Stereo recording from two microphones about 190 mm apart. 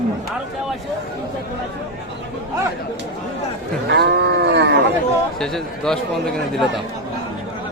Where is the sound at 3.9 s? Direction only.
60° right (ahead or behind).